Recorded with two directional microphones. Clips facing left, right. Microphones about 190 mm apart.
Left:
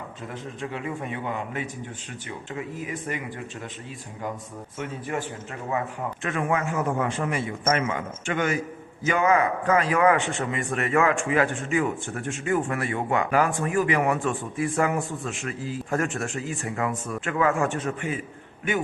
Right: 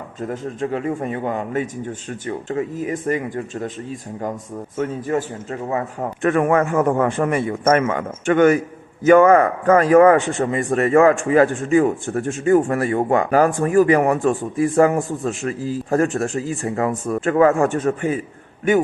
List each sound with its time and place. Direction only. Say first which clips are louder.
0.2 s a man's voice: right 11 dB; 45° right (ahead or behind)
4.8 s a man's voice: right 9 dB; 40° right (ahead or behind)